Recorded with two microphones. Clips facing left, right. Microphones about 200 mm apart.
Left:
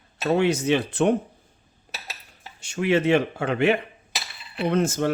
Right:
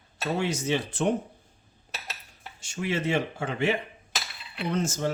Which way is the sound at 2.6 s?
65° left (ahead or behind).